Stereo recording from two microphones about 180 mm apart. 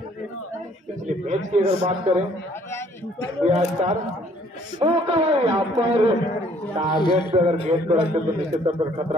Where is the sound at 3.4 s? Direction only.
40° right (ahead or behind).